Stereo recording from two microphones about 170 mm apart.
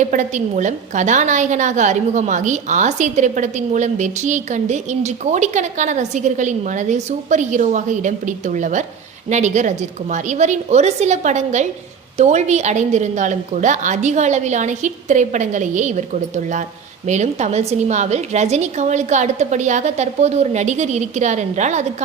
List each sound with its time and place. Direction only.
0.0 s a woman's voice: 45° right (ahead or behind)